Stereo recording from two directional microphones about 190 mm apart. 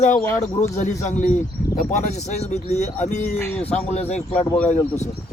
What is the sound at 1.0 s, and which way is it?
Speech, 40° left (ahead or behind).